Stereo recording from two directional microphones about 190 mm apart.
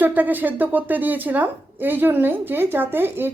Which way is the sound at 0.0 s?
10° right (ahead or behind).